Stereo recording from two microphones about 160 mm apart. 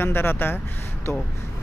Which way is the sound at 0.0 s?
15° left (ahead or behind).